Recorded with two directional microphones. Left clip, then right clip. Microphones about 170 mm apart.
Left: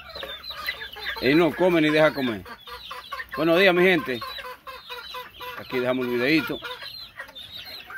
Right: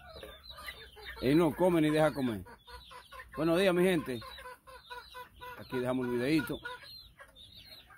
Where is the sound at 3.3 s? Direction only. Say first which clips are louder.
Left 10 dB; 5° right (ahead or behind).